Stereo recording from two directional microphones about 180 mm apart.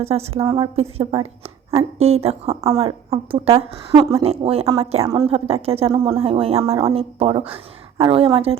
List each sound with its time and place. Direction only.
0.0 s speech: 35° right (ahead or behind)
0.4 s a woman's voice: 25° right (ahead or behind)
0.8 s speech: 35° right (ahead or behind)
4.2 s speech: 35° right (ahead or behind)
5.0 s a woman's voice: 20° right (ahead or behind)
5.5 s speech: 35° right (ahead or behind)
5.9 s a woman's voice: 20° right (ahead or behind)
6.1 s speech: 30° right (ahead or behind)